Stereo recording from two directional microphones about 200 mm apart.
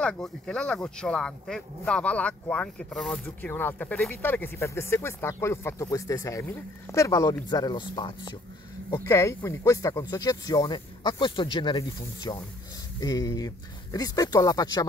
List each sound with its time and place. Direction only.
0.0 s speech: 5° left (ahead or behind); by 14.9 s 20° left (ahead or behind)